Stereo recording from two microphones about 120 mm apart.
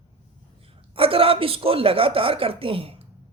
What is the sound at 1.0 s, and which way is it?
A woman's voice, 50° right (ahead or behind).